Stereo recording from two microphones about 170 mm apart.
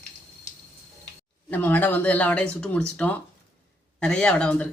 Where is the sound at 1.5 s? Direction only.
10° left (ahead or behind).